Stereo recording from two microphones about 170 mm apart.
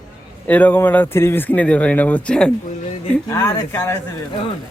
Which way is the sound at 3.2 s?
20° left (ahead or behind).